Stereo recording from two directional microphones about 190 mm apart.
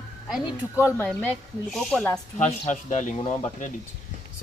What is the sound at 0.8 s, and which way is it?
Speech, 15° left (ahead or behind).